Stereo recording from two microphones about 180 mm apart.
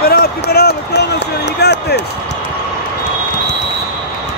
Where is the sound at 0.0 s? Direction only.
60° left (ahead or behind).